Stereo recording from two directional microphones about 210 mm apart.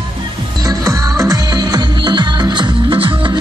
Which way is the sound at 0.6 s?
15° right (ahead or behind).